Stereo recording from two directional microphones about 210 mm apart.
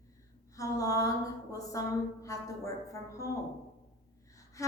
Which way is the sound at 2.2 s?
15° left (ahead or behind).